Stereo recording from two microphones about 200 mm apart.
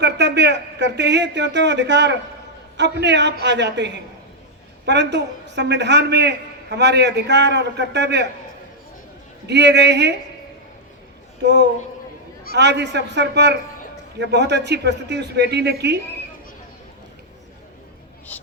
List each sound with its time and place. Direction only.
0.0 s a man's voice: 55° right (ahead or behind)
9.5 s a man's voice: 60° right (ahead or behind)
11.4 s a man's voice: 60° right (ahead or behind)